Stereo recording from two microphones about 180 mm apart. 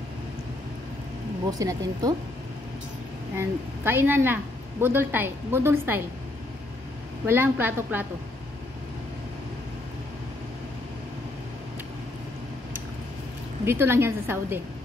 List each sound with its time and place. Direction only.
1.5 s speech: 20° right (ahead or behind)
3.3 s a woman's voice: 10° right (ahead or behind)
7.2 s a woman's voice: 10° right (ahead or behind)
13.7 s a woman's voice: 15° right (ahead or behind)